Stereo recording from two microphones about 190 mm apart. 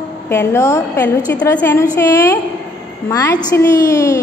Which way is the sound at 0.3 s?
15° left (ahead or behind).